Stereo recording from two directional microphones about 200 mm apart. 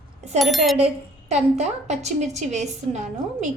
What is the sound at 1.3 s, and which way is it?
A woman's voice, 35° right (ahead or behind).